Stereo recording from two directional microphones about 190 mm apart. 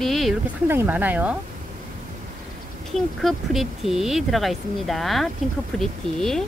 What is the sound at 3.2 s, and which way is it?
Speech, centre (ahead or behind).